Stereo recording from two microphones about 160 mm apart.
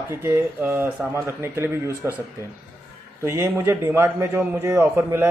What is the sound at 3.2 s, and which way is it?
A man's voice, 15° right (ahead or behind).